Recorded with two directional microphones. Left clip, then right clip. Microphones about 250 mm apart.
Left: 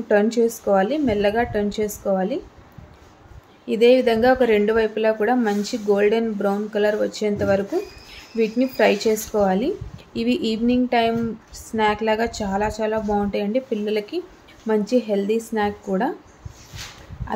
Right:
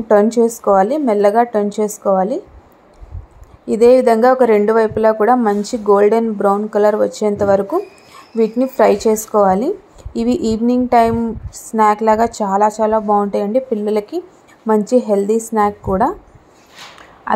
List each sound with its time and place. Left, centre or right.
0.1 s a woman's voice: centre
3.6 s a woman's voice: centre